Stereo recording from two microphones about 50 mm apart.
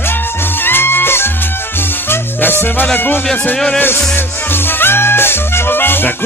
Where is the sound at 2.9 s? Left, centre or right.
Left.